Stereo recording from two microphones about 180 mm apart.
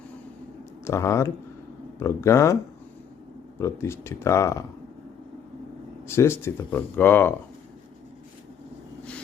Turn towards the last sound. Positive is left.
turn(degrees=10)  # may be behind; listen again after turning